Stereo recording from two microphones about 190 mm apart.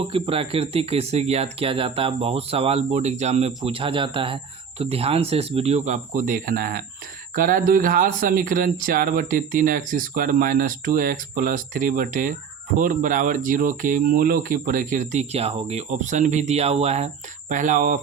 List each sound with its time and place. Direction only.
0.1 s speech: 30° right (ahead or behind)